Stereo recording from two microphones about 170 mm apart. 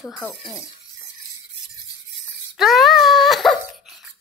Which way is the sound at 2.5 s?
Centre (ahead or behind).